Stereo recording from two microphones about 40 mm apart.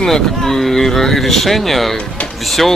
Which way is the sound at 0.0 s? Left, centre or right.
Centre.